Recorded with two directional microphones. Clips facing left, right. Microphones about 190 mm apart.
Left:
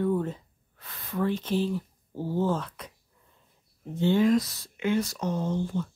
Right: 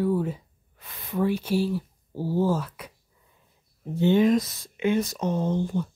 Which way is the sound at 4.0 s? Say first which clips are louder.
Right 2 dB; 20° right (ahead or behind).